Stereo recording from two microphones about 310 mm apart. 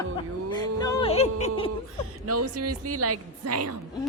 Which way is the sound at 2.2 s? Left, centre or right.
Right.